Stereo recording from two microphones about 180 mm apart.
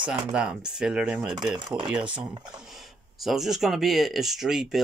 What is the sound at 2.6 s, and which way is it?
Speech, centre (ahead or behind).